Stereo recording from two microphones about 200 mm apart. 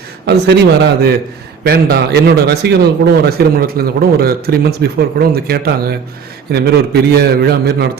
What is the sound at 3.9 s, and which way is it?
A man's voice, 50° right (ahead or behind).